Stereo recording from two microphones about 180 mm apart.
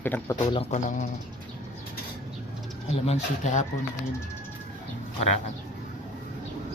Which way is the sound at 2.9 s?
40° left (ahead or behind).